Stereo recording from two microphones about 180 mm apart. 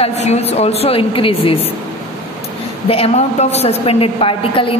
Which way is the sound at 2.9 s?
35° left (ahead or behind).